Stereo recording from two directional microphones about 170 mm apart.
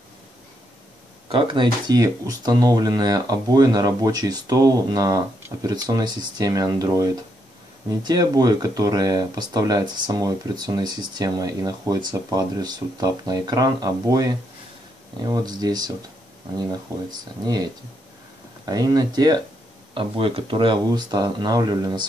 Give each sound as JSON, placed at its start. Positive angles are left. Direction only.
{"t": 1.3, "sound": "speech", "side_deg": -30}
{"t": 15.2, "sound": "speech", "side_deg": -25}
{"t": 17.1, "sound": "speech", "side_deg": -25}
{"t": 18.7, "sound": "speech", "side_deg": -25}